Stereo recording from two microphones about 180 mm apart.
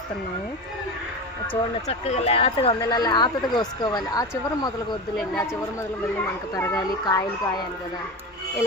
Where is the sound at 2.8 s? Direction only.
20° left (ahead or behind).